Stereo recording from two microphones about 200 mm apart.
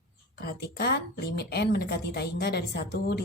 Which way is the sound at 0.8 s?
55° left (ahead or behind).